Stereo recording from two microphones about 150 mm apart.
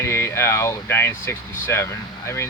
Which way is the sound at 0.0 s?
15° left (ahead or behind).